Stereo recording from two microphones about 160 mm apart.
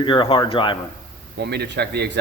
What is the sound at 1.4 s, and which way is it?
Speech, 90° right.